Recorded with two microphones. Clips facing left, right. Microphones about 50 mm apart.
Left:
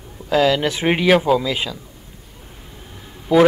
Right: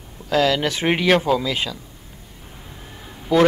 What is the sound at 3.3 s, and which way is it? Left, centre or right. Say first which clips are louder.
Speech: left 3 dB; centre.